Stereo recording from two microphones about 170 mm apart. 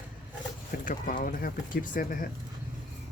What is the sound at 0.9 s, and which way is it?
Speech, 55° left (ahead or behind).